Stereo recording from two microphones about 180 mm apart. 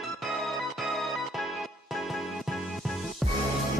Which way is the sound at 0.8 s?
Centre (ahead or behind).